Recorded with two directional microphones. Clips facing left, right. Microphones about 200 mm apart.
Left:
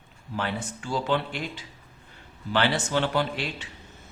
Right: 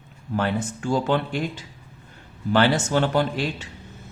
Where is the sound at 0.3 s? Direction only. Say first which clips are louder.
Right 6 dB; 50° right (ahead or behind).